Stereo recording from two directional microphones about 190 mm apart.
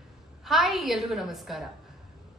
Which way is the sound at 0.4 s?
Centre (ahead or behind).